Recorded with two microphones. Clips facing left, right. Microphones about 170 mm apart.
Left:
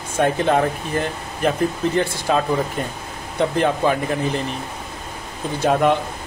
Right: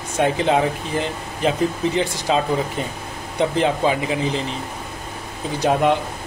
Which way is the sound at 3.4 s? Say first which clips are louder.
Even; 15° right (ahead or behind).